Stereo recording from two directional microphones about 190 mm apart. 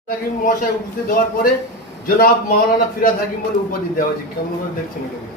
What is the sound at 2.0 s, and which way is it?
Speech, 50° left (ahead or behind).